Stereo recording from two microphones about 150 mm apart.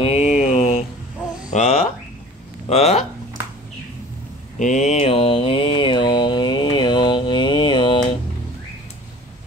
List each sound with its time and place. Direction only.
0.0 s a sound: 45° left (ahead or behind)
2.7 s speech: 45° left (ahead or behind)
4.6 s mantra: 55° left (ahead or behind); by 8.2 s 30° left (ahead or behind)